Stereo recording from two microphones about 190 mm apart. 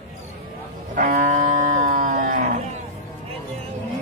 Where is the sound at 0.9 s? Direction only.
45° right (ahead or behind).